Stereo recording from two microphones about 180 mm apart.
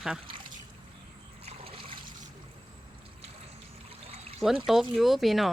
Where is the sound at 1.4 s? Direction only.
30° right (ahead or behind).